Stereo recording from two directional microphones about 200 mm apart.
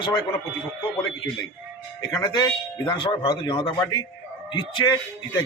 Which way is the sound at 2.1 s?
20° left (ahead or behind).